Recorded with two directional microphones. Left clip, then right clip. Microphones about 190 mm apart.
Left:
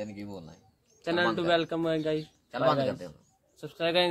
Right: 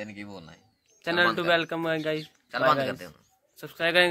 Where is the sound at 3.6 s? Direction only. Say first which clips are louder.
Right 4 dB; 10° right (ahead or behind).